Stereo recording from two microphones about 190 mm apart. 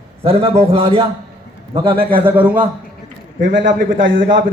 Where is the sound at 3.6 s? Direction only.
70° right (ahead or behind).